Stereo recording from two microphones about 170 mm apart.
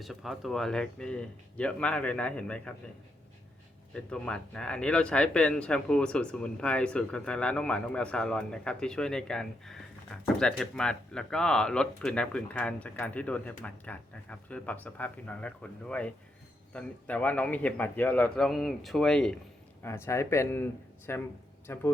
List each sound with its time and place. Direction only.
0.0 s speech: centre (ahead or behind)
3.9 s speech: 5° left (ahead or behind)
19.8 s speech: 15° left (ahead or behind)